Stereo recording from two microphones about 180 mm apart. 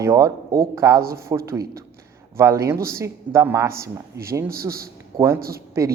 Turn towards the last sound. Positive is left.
turn(degrees=-15)  # may be behind; listen again after turning